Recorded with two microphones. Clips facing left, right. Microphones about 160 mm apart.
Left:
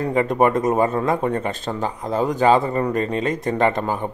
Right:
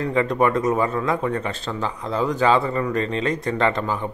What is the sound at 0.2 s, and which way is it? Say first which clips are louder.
Speech: left 2 dB; 45° left (ahead or behind).